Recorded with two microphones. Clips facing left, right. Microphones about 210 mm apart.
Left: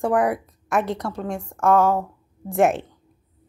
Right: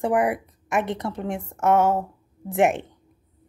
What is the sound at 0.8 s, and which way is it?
Speech, 20° right (ahead or behind).